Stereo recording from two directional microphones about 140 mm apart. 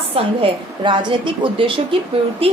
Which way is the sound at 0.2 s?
35° right (ahead or behind).